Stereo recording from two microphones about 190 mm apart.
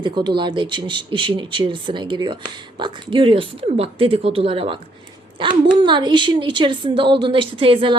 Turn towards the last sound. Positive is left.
turn(degrees=-25)  # may be behind; listen again after turning